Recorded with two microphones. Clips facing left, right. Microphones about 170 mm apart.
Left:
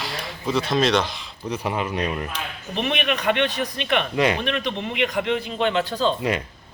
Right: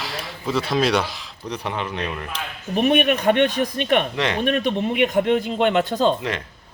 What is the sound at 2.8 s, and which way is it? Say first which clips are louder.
A man's voice: right 6 dB; 45° right (ahead or behind).